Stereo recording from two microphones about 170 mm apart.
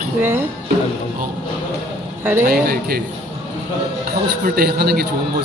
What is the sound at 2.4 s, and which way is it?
Speech, 60° right (ahead or behind).